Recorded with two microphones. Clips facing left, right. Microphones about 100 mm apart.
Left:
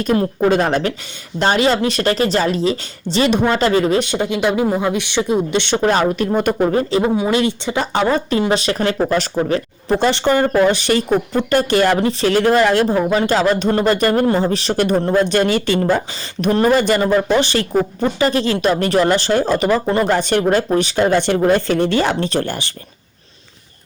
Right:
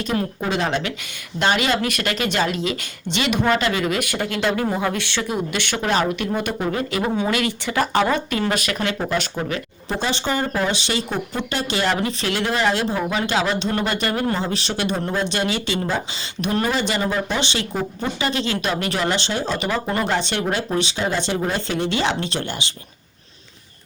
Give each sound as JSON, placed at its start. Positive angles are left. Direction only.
{"t": 0.0, "sound": "speech", "side_deg": 45}
{"t": 5.8, "sound": "speech", "side_deg": 40}
{"t": 6.7, "sound": "speech", "side_deg": 30}
{"t": 9.9, "sound": "speech", "side_deg": 55}
{"t": 11.9, "sound": "speech", "side_deg": 35}
{"t": 12.9, "sound": "speech", "side_deg": 40}